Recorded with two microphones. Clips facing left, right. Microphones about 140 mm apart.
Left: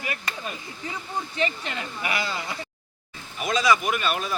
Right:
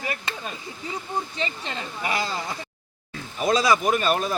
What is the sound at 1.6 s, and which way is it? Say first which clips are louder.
Speech: right 1 dB; 30° right (ahead or behind).